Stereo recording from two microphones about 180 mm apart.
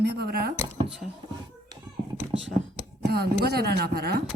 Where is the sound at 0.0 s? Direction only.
65° right (ahead or behind).